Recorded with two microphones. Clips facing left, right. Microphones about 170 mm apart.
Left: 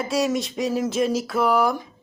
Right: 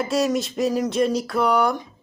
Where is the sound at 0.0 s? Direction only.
Centre (ahead or behind).